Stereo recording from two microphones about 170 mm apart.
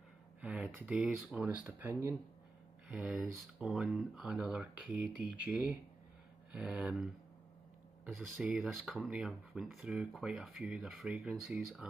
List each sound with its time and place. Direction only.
0.4 s speech: 5° right (ahead or behind)
1.7 s speech: 15° right (ahead or behind)
2.9 s speech: 5° right (ahead or behind)
6.5 s speech: 5° right (ahead or behind)